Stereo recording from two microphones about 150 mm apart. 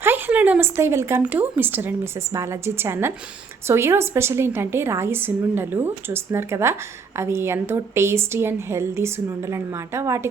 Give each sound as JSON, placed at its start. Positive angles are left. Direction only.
{"t": 0.0, "sound": "speech", "side_deg": -10}